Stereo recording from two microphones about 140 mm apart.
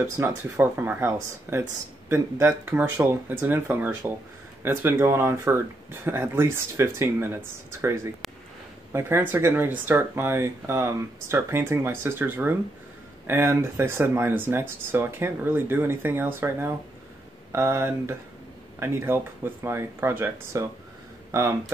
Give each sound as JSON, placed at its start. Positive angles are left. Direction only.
{"t": 0.0, "sound": "speech", "side_deg": -15}